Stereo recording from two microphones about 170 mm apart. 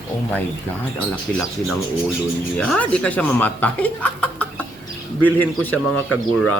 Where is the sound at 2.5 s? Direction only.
5° left (ahead or behind).